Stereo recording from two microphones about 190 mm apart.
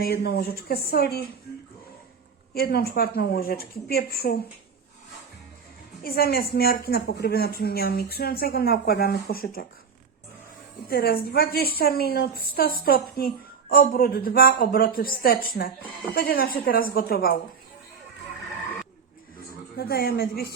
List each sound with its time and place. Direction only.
0.0 s speech: 55° left (ahead or behind)
2.6 s a woman's voice: 55° left (ahead or behind)
6.0 s a woman's voice: 50° left (ahead or behind)
10.8 s a woman's voice: 55° left (ahead or behind)
19.7 s speech: 55° left (ahead or behind)